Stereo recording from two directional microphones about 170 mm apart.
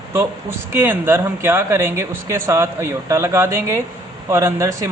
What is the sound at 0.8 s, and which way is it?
Speech, 15° right (ahead or behind).